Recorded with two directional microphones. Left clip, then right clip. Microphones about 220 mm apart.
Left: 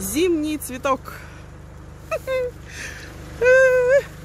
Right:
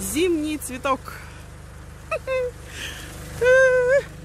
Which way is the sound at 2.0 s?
5° left (ahead or behind).